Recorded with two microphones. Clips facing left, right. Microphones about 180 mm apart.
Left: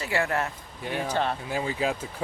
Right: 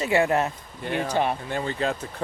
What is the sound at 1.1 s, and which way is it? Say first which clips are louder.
Speech: right 3 dB; 15° right (ahead or behind).